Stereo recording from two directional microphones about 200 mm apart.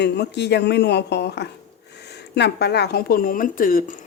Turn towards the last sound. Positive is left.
turn(degrees=45)  # may be behind; listen again after turning